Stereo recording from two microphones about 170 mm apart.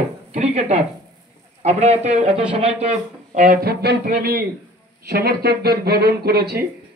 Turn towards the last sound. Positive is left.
turn(degrees=-70)  # may be behind; listen again after turning